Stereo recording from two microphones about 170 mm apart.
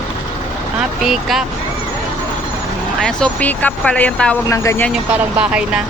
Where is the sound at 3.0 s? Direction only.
5° left (ahead or behind).